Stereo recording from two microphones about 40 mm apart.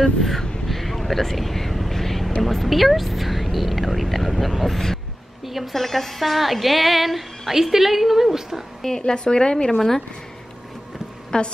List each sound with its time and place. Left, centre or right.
0.2 s a sound: centre
2.4 s speech: centre
5.4 s speech: centre
8.8 s speech: centre
9.7 s speech: centre
11.3 s speech: left